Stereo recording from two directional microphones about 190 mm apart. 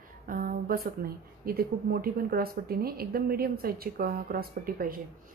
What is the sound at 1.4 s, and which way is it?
A woman's voice, 50° right (ahead or behind).